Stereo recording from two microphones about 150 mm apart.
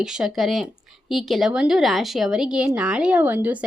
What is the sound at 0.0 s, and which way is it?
Speech, 5° right (ahead or behind).